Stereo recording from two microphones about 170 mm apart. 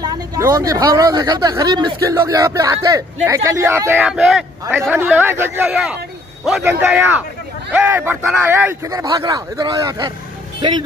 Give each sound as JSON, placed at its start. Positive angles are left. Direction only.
{"t": 0.0, "sound": "speech", "side_deg": -20}